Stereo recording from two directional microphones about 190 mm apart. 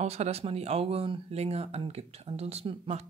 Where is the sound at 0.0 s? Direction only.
35° right (ahead or behind).